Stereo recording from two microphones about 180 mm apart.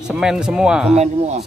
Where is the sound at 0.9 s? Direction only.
35° right (ahead or behind).